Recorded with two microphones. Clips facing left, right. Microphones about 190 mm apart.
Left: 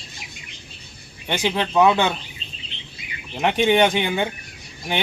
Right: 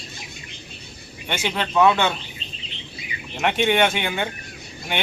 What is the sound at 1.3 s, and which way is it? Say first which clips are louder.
Speech: left 3 dB; 15° left (ahead or behind).